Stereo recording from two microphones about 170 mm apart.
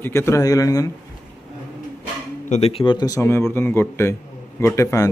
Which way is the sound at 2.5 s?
35° left (ahead or behind).